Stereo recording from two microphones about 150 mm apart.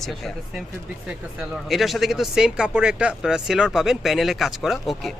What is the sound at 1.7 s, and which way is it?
Speech, centre (ahead or behind).